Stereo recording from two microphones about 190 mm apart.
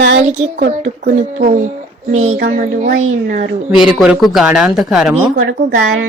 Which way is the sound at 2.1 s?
40° right (ahead or behind).